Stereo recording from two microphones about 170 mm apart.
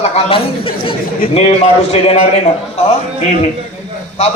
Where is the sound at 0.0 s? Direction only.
35° left (ahead or behind).